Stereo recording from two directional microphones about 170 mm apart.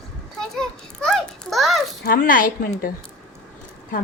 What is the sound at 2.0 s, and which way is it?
Speech, 55° left (ahead or behind).